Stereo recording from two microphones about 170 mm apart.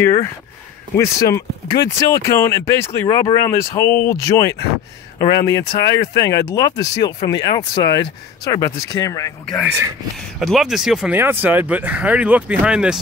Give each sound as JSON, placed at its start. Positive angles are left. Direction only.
{"t": 0.0, "sound": "speech", "side_deg": 15}
{"t": 9.5, "sound": "speech", "side_deg": -5}